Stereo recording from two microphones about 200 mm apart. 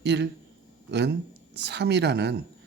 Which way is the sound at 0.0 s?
60° right (ahead or behind).